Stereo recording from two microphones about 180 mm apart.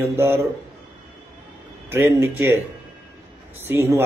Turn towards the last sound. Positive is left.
turn(degrees=-15)  # may be behind; listen again after turning